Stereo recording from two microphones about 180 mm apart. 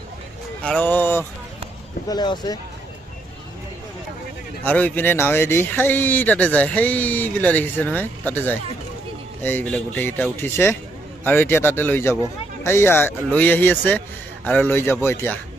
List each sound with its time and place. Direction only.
0.6 s speech: 10° left (ahead or behind)
2.0 s speech: 25° left (ahead or behind)
4.6 s speech: 10° left (ahead or behind)